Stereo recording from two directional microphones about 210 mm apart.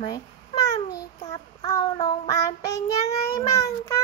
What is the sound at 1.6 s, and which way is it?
Child singing, 20° left (ahead or behind).